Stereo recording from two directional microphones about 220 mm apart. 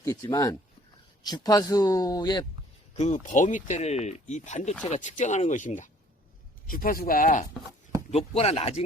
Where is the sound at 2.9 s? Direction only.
30° left (ahead or behind).